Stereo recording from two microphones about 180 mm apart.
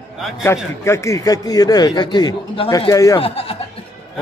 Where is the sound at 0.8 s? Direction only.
15° left (ahead or behind).